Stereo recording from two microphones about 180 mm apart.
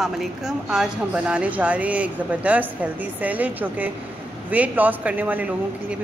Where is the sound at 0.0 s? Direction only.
Centre (ahead or behind).